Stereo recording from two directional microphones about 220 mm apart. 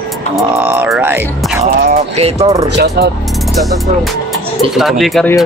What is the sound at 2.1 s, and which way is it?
Speech, 30° right (ahead or behind).